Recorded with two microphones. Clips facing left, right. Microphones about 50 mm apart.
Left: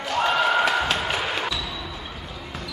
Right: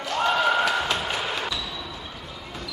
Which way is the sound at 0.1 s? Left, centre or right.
Centre.